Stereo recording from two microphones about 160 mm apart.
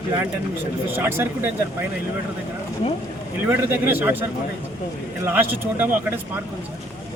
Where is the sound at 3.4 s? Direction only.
15° right (ahead or behind).